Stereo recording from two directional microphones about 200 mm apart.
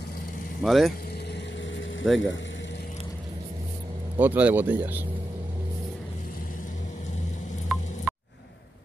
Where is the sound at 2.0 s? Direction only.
Centre (ahead or behind).